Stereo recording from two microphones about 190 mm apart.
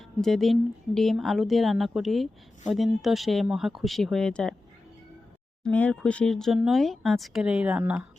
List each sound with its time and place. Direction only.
0.2 s speech: centre (ahead or behind)
5.6 s speech: 5° left (ahead or behind)